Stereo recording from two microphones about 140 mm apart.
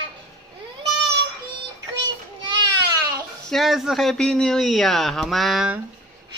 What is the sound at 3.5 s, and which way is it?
Speech, centre (ahead or behind).